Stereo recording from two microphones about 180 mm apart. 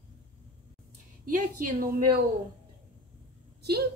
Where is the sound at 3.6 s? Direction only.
65° right (ahead or behind).